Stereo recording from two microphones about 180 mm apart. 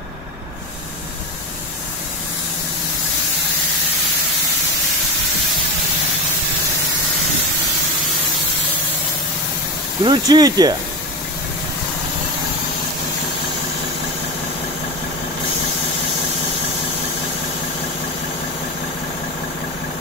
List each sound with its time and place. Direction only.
10.0 s speech: 25° right (ahead or behind)